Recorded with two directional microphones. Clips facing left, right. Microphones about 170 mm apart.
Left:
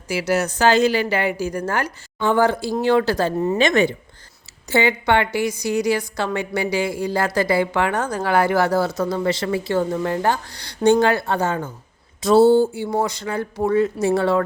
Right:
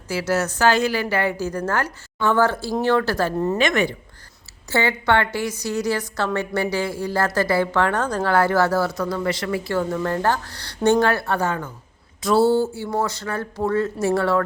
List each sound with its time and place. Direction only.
0.1 s a woman's voice: 15° left (ahead or behind)
3.6 s speech: 25° left (ahead or behind)
4.7 s a woman's voice: 15° left (ahead or behind)